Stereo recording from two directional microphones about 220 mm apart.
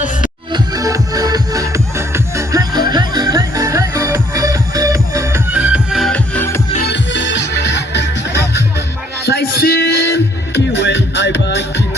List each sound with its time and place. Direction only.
0.5 s music: 15° right (ahead or behind); by 6.6 s 10° left (ahead or behind)
6.7 s music: 50° left (ahead or behind)